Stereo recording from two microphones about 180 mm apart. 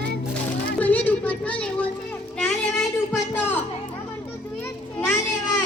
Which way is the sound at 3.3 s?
10° left (ahead or behind).